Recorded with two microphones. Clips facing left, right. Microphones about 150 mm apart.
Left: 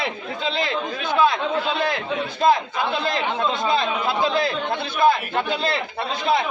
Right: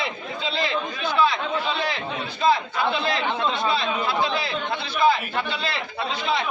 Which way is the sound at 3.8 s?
45° left (ahead or behind).